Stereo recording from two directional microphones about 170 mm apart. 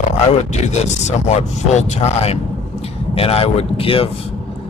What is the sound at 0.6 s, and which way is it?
Speech, 40° left (ahead or behind).